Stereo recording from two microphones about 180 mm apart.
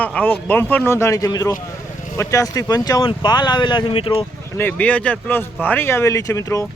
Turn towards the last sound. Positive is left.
turn(degrees=20)  # may be behind; listen again after turning